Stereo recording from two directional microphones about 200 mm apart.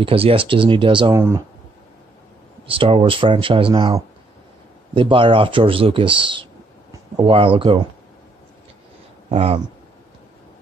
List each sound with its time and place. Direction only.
0.0 s speech: 30° right (ahead or behind)
2.6 s speech: 25° right (ahead or behind)
9.3 s speech: 30° right (ahead or behind)